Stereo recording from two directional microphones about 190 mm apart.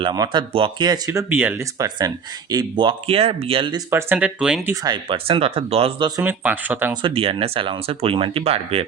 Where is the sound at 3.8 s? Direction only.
10° right (ahead or behind).